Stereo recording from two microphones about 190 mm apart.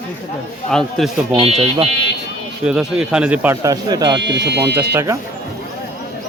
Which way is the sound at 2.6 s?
5° right (ahead or behind).